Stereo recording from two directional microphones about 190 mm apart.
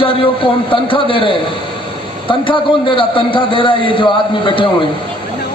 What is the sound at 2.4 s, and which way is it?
A man's voice, 25° left (ahead or behind).